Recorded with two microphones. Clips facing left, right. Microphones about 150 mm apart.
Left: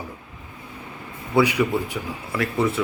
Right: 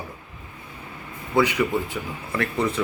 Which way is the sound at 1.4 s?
10° left (ahead or behind).